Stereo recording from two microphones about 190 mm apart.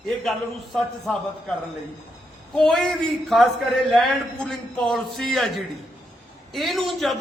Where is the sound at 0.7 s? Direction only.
Centre (ahead or behind).